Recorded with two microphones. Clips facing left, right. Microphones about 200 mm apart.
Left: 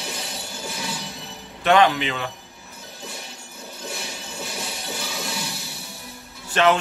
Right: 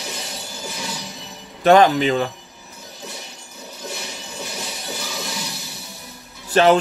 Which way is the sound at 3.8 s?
Centre (ahead or behind).